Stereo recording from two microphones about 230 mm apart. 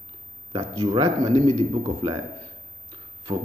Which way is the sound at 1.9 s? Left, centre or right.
Right.